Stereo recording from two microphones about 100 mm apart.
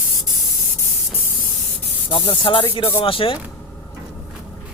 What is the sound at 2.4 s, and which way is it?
Speech, 55° left (ahead or behind).